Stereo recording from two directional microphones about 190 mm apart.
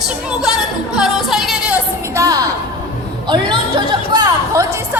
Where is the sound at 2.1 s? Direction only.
20° right (ahead or behind).